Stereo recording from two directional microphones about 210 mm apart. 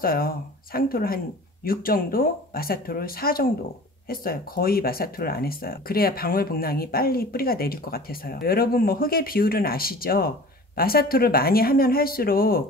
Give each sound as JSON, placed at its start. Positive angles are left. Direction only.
{"t": 0.0, "sound": "speech", "side_deg": 45}